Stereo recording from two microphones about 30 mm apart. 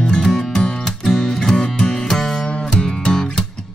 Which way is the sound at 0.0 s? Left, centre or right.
Centre.